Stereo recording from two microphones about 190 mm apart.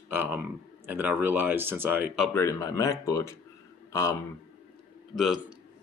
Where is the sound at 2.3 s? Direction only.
15° left (ahead or behind).